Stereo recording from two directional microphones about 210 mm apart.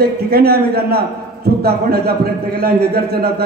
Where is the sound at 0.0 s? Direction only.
50° right (ahead or behind).